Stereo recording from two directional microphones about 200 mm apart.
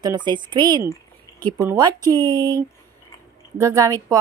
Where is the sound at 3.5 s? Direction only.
15° right (ahead or behind).